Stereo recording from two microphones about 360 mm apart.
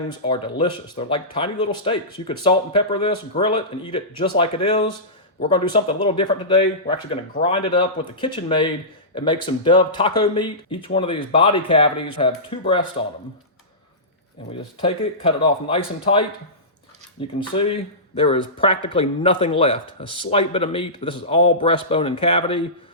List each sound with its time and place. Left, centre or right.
0.1 s speech: centre
14.8 s speech: centre